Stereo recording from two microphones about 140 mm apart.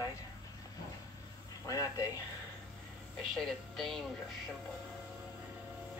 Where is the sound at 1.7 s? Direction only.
25° left (ahead or behind).